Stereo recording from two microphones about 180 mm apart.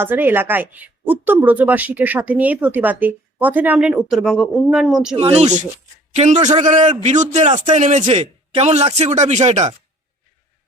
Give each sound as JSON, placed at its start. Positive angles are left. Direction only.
{"t": 0.0, "sound": "speech", "side_deg": -10}
{"t": 5.1, "sound": "a man's voice", "side_deg": -35}